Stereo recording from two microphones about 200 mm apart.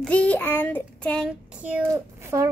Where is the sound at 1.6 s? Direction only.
10° right (ahead or behind).